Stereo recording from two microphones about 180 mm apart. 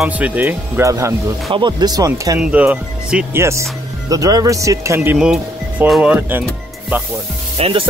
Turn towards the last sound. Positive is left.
turn(degrees=-30)  # may be behind; listen again after turning